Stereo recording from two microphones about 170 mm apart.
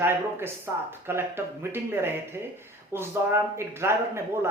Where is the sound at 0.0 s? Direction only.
15° right (ahead or behind).